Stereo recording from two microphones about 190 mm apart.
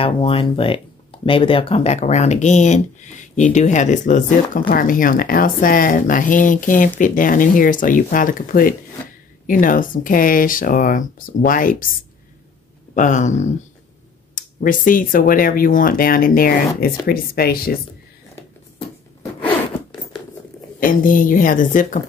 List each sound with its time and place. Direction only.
0.0 s speech: 30° left (ahead or behind); by 11.9 s 45° left (ahead or behind)
12.9 s speech: 40° left (ahead or behind)
20.8 s speech: 45° left (ahead or behind)